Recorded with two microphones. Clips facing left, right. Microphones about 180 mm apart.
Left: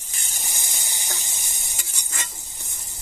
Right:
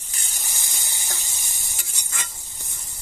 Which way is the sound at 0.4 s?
20° left (ahead or behind).